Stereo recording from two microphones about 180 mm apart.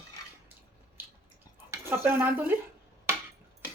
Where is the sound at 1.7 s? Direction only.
15° right (ahead or behind).